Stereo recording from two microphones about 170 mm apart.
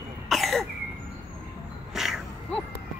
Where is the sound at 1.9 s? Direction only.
Centre (ahead or behind).